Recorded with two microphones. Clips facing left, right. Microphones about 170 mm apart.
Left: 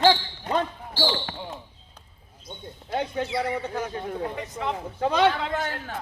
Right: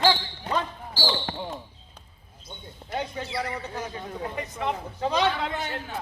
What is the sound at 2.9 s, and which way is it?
A man's voice, 55° left (ahead or behind).